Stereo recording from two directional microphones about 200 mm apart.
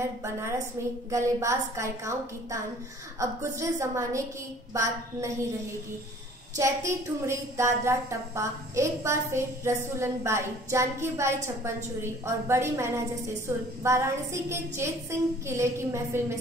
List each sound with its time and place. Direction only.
0.2 s a woman's voice: 15° right (ahead or behind)
6.5 s a woman's voice: 15° right (ahead or behind)